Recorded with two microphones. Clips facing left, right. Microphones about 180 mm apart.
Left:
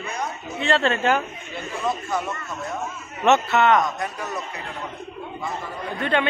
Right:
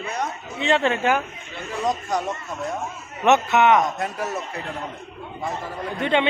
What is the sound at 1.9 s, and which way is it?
Speech, 40° right (ahead or behind).